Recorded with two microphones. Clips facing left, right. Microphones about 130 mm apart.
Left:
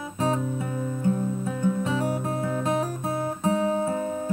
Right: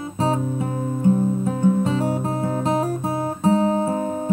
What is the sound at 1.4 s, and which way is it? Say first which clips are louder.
Music: right 5 dB; 25° right (ahead or behind).